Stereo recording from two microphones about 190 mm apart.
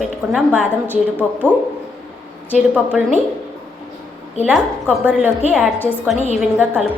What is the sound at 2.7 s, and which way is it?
Speech, 5° right (ahead or behind).